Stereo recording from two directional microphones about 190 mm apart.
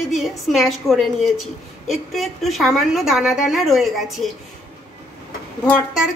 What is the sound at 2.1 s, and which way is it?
A woman's voice, centre (ahead or behind).